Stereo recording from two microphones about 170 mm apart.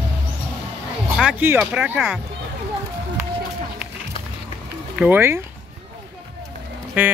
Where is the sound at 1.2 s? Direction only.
10° right (ahead or behind).